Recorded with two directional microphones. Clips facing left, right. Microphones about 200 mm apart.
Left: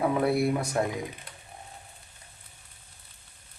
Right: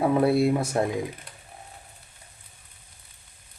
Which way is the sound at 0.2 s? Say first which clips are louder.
Right 4 dB; 25° right (ahead or behind).